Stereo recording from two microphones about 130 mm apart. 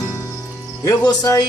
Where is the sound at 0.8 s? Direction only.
30° left (ahead or behind).